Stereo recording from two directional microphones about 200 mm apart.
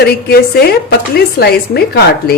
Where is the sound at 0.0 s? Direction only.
50° left (ahead or behind).